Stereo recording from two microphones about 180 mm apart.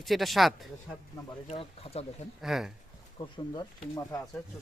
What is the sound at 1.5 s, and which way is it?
Speech, 35° left (ahead or behind).